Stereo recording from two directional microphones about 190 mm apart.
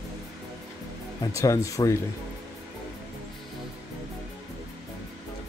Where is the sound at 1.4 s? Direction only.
15° left (ahead or behind).